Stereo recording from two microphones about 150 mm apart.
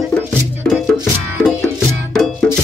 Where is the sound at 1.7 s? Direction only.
5° right (ahead or behind).